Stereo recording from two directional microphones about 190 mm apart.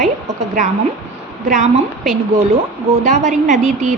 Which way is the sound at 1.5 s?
40° right (ahead or behind).